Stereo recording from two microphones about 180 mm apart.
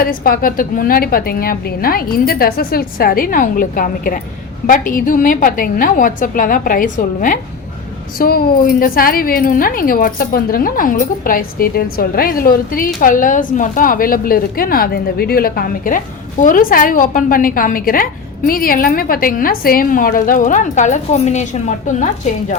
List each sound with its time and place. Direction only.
0.0 s a woman's voice: 55° left (ahead or behind)